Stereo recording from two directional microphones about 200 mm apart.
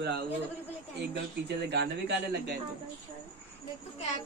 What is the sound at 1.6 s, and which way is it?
Speech, 55° right (ahead or behind).